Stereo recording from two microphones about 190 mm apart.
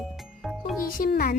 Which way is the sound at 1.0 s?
50° left (ahead or behind).